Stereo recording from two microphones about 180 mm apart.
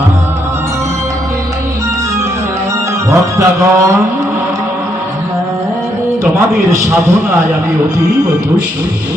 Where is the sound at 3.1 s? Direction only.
15° right (ahead or behind).